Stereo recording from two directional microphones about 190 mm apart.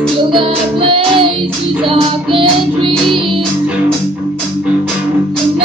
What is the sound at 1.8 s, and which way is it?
Music, 25° right (ahead or behind).